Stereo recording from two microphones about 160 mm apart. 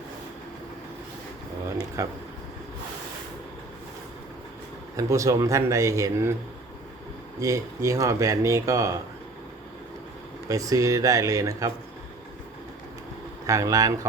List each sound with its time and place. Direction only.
2.0 s speech: 20° right (ahead or behind)
4.9 s speech: 20° right (ahead or behind)
7.3 s speech: 20° right (ahead or behind)
10.5 s speech: 20° right (ahead or behind)
13.5 s speech: 20° right (ahead or behind)